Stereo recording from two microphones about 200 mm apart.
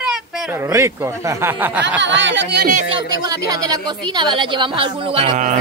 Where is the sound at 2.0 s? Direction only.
65° right (ahead or behind).